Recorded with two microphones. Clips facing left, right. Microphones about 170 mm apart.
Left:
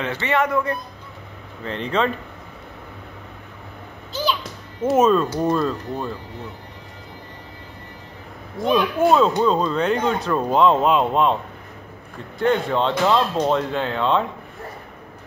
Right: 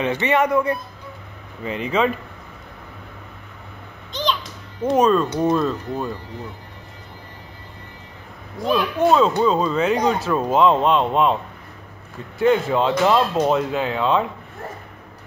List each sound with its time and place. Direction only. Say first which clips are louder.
0.0 s speech: right 3 dB; 15° right (ahead or behind)
4.1 s music: even; 5° left (ahead or behind)
4.8 s speech: even; 5° left (ahead or behind)
8.5 s speech: left 1 dB; centre (ahead or behind)
12.4 s speech: right 2 dB; 5° right (ahead or behind)